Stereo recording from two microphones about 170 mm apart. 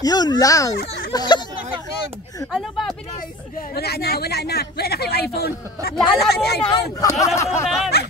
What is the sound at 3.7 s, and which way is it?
Speech, 65° left (ahead or behind).